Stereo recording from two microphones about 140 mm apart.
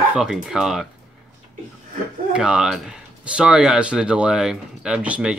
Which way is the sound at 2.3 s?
5° right (ahead or behind).